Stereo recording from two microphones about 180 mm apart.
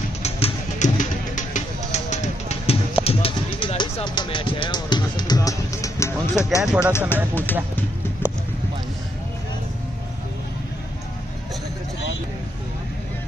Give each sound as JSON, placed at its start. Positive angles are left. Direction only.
{"t": 0.2, "sound": "music", "side_deg": 40}
{"t": 6.6, "sound": "speech", "side_deg": -5}
{"t": 6.9, "sound": "speech", "side_deg": 15}
{"t": 8.2, "sound": "clip-clop", "side_deg": 10}